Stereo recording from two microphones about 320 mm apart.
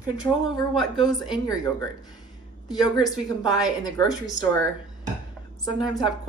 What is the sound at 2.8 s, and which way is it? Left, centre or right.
Speech, centre.